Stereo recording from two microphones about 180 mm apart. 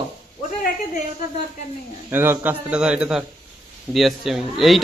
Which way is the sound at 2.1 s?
10° right (ahead or behind).